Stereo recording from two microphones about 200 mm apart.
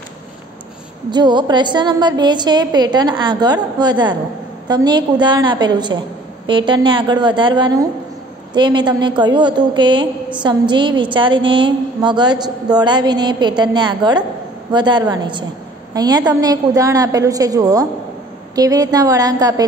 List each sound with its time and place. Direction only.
1.1 s a woman's voice: 20° right (ahead or behind)